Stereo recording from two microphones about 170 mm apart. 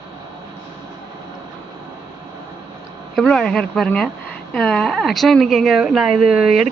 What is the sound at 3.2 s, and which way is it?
Speech, 5° left (ahead or behind).